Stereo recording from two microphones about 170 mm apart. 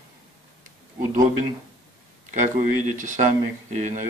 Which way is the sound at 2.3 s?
45° right (ahead or behind).